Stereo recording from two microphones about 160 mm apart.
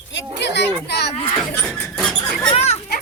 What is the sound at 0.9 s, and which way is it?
Speech, 90° left.